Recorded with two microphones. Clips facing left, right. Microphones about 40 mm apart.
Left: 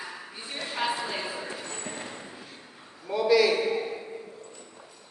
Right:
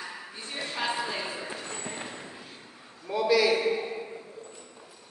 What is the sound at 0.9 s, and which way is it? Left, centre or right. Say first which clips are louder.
Clip-clop: even; centre.